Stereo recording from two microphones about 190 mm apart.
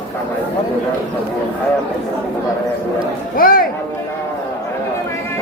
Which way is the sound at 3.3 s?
50° left (ahead or behind).